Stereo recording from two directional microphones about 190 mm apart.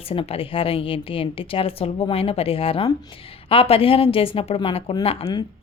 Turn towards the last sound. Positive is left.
turn(degrees=30)  # may be behind; listen again after turning